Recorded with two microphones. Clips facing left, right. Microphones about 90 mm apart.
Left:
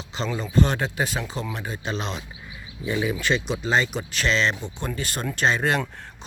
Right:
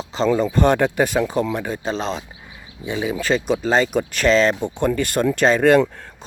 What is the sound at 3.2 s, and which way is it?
Speech, 40° right (ahead or behind).